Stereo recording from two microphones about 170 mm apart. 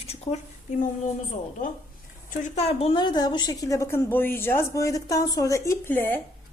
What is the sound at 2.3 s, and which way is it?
A woman's voice, 40° left (ahead or behind).